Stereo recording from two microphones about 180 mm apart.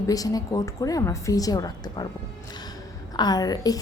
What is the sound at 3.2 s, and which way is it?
Speech, 20° left (ahead or behind).